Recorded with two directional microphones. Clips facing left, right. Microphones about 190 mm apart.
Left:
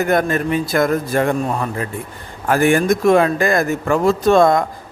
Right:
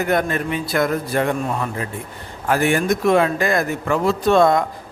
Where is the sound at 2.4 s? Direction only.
50° left (ahead or behind).